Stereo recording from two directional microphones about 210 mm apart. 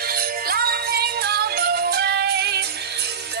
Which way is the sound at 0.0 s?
45° right (ahead or behind).